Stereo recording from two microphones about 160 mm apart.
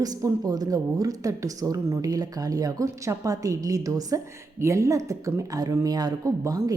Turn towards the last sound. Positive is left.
turn(degrees=-20)  # may be behind; listen again after turning